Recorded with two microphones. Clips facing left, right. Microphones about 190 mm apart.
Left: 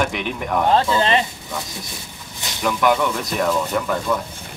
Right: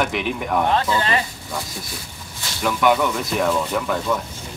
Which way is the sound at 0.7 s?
25° left (ahead or behind).